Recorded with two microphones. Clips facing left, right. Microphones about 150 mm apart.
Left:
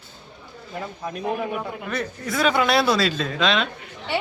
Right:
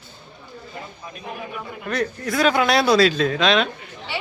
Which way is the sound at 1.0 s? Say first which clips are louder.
Left 9 dB; 65° left (ahead or behind).